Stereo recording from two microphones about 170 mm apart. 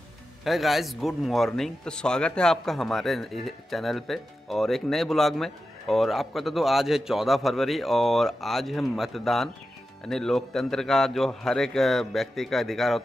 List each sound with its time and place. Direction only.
0.4 s speech: centre (ahead or behind)